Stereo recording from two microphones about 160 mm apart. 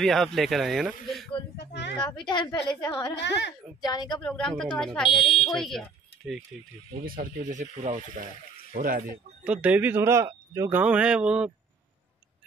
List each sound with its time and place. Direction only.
0.0 s speech: centre (ahead or behind)
1.6 s a sound: 90° left
2.2 s a woman's voice: 30° left (ahead or behind)
3.2 s a woman's voice: 90° left
3.8 s a woman's voice: 25° left (ahead or behind)
4.2 s speech: 5° left (ahead or behind)
5.2 s speech: 35° left (ahead or behind)
5.5 s speech: centre (ahead or behind)
7.0 s speech: 65° right (ahead or behind)
8.7 s speech: 60° right (ahead or behind)
9.4 s speech: 10° right (ahead or behind)
10.8 s speech: 5° right (ahead or behind)